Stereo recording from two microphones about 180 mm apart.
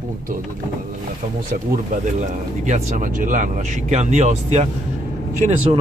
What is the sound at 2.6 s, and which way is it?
Speech, 45° right (ahead or behind).